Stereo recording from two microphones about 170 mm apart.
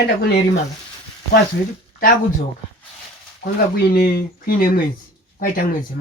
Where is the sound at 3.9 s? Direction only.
60° left (ahead or behind).